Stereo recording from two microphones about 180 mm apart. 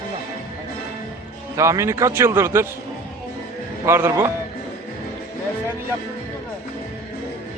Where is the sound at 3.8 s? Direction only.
15° right (ahead or behind).